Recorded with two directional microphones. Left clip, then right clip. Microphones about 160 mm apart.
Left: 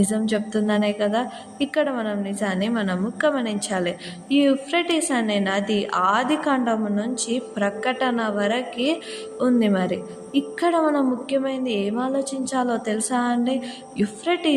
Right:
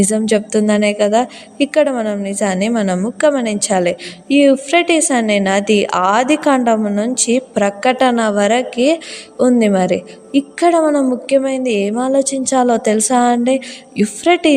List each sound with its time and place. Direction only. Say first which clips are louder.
0.0 s a woman's voice: right 9 dB; 50° right (ahead or behind)